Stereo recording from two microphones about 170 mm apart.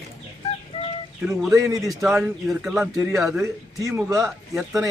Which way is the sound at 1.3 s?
5° right (ahead or behind).